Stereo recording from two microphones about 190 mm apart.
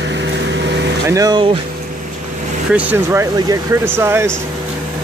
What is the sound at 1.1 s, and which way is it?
Speech, 20° right (ahead or behind).